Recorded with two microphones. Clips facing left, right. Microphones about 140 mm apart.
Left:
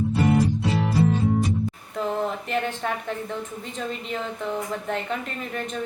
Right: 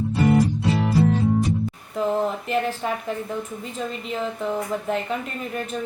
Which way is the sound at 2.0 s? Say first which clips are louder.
Right 3 dB; 5° right (ahead or behind).